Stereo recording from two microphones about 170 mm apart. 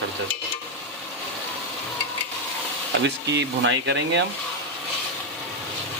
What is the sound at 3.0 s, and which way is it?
Speech, 90° right.